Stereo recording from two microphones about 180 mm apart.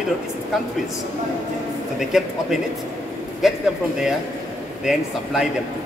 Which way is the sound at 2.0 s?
Centre (ahead or behind).